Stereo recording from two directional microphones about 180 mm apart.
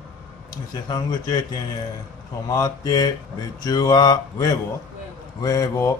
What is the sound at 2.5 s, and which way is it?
Speech, 20° left (ahead or behind).